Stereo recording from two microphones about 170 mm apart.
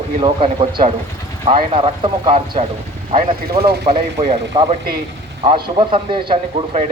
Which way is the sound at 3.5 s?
70° right (ahead or behind).